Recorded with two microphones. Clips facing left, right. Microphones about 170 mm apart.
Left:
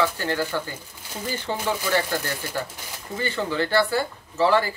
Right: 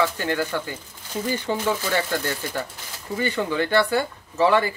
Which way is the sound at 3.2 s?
15° right (ahead or behind).